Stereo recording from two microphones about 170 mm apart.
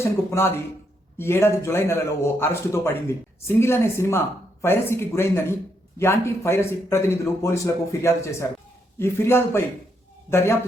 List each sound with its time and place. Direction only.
0.0 s a man's voice: 15° left (ahead or behind)